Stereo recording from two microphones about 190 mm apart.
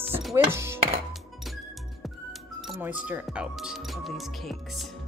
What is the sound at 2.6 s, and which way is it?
Speech, 5° right (ahead or behind).